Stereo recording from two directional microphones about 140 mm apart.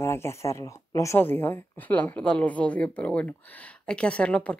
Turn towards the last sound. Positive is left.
turn(degrees=10)  # may be behind; listen again after turning